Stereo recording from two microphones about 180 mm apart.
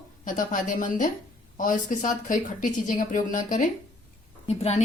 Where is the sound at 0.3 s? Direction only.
50° left (ahead or behind).